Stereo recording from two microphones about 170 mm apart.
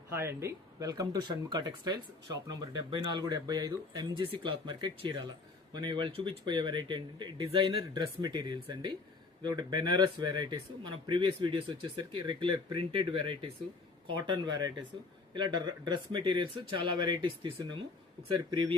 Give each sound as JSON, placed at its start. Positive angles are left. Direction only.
{"t": 0.1, "sound": "speech", "side_deg": -15}